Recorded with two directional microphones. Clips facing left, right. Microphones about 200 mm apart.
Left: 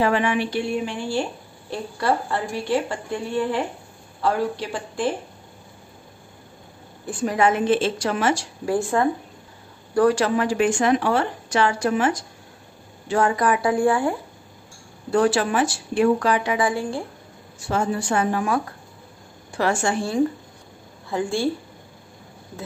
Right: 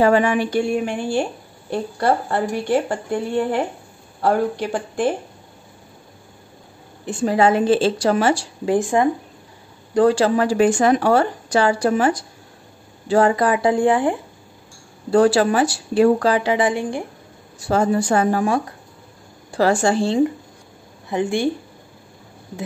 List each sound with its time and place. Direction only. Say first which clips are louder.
0.0 s a woman's voice: right 5 dB; 45° right (ahead or behind)
7.1 s speech: right 4 dB; 30° right (ahead or behind)
8.6 s speech: right 3 dB; 20° right (ahead or behind)
9.9 s speech: right 3 dB; 30° right (ahead or behind)
15.0 s speech: right 5 dB; 35° right (ahead or behind)
17.6 s speech: right 6 dB; 40° right (ahead or behind); by 21.5 s 20° right (ahead or behind)